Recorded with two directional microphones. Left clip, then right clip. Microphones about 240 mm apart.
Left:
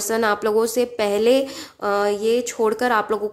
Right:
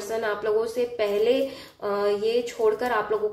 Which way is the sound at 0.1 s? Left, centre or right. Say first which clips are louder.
Left 6 dB; left.